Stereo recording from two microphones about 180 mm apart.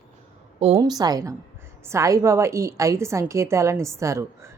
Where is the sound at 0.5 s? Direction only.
35° right (ahead or behind).